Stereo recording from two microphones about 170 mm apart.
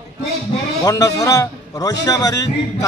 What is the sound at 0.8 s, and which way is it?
A man's voice, 20° left (ahead or behind).